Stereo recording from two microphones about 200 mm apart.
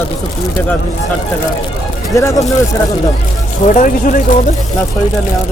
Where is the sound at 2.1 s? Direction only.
15° left (ahead or behind).